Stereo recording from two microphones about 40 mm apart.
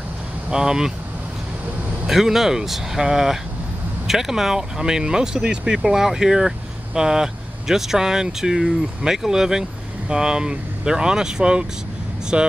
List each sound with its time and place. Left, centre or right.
0.5 s speech: centre
2.0 s speech: centre; by 12.5 s right